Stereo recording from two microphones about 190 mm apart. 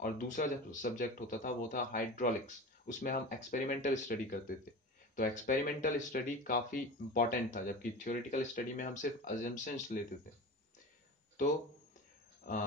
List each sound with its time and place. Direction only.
0.0 s speech: 40° left (ahead or behind)
12.4 s speech: 45° left (ahead or behind)